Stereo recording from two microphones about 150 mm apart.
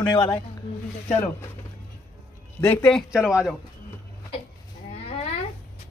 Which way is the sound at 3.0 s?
5° right (ahead or behind).